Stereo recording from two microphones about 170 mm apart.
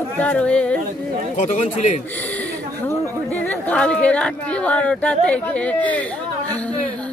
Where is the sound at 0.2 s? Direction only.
5° left (ahead or behind).